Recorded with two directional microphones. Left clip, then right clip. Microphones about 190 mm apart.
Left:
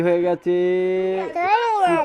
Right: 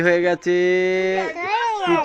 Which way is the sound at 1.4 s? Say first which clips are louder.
Left 4 dB; 40° left (ahead or behind).